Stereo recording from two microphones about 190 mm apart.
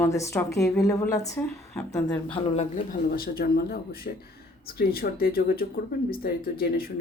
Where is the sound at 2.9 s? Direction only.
50° left (ahead or behind).